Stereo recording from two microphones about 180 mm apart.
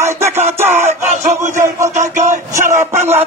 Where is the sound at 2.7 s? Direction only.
40° right (ahead or behind).